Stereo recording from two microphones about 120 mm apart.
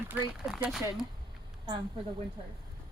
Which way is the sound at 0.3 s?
5° right (ahead or behind).